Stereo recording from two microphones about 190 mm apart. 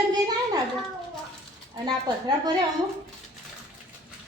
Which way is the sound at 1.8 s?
20° right (ahead or behind).